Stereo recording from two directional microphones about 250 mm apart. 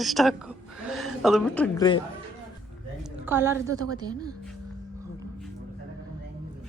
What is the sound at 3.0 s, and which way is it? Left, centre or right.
A woman's voice, centre.